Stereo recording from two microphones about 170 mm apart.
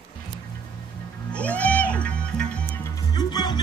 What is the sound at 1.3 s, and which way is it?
Music, 10° left (ahead or behind).